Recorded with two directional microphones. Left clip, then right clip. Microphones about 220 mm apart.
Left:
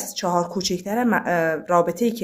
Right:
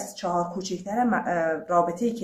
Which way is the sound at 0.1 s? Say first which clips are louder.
Left 5 dB; 45° left (ahead or behind).